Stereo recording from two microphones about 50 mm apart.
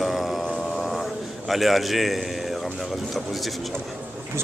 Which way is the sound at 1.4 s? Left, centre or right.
Centre.